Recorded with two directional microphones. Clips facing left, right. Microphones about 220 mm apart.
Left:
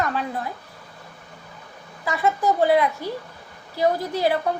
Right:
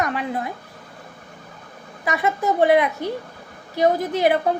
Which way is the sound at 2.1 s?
20° right (ahead or behind).